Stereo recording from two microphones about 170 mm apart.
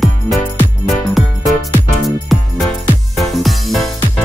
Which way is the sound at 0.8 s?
Centre (ahead or behind).